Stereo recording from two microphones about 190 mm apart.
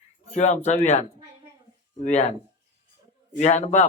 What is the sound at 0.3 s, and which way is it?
Speech, 35° left (ahead or behind).